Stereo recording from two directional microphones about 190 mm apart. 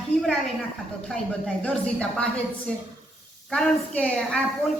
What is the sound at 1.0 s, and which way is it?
Speech, 5° left (ahead or behind).